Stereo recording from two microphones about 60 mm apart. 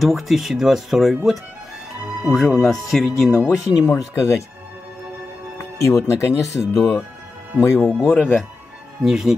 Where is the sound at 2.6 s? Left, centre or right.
Centre.